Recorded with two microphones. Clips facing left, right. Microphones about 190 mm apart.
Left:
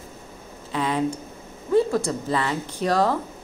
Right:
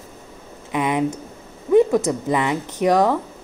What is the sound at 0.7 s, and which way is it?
A woman's voice, 15° right (ahead or behind).